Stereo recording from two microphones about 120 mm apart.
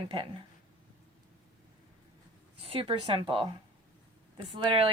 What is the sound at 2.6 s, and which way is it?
Speech, 55° right (ahead or behind).